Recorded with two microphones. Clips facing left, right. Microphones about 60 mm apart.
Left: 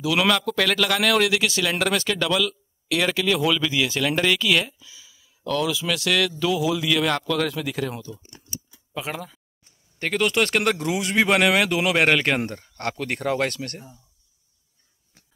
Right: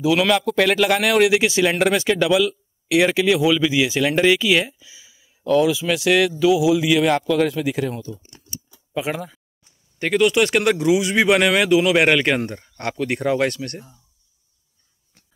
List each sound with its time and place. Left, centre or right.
0.2 s speech: centre
8.9 s speech: centre